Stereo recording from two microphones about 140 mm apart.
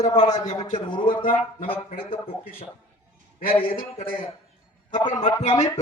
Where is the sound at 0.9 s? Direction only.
35° left (ahead or behind).